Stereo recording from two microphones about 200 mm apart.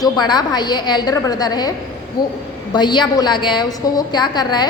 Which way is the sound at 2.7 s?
20° left (ahead or behind).